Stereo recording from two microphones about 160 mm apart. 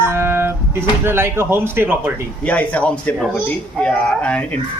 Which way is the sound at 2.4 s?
10° left (ahead or behind).